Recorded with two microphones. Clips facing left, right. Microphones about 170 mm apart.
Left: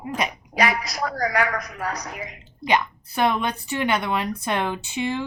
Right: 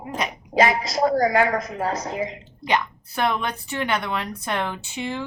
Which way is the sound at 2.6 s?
15° left (ahead or behind).